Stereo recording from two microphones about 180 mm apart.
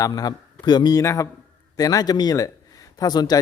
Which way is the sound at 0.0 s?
20° left (ahead or behind).